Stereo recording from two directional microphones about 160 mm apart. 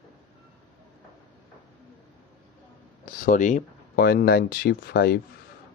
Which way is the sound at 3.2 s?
50° left (ahead or behind).